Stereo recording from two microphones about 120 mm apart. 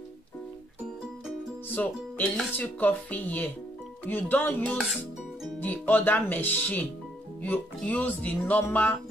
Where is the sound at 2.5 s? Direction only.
15° left (ahead or behind).